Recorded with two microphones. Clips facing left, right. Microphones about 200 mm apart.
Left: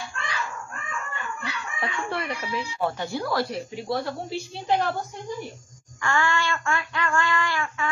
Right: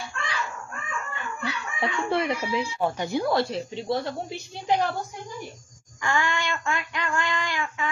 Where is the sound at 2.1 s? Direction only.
20° right (ahead or behind).